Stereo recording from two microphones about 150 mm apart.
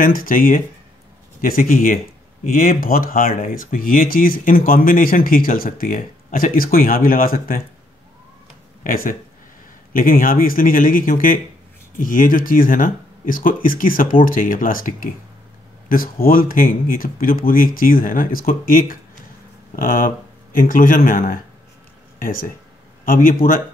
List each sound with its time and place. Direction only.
0.0 s speech: 65° left (ahead or behind)
8.8 s speech: 75° left (ahead or behind)
22.2 s speech: 70° left (ahead or behind)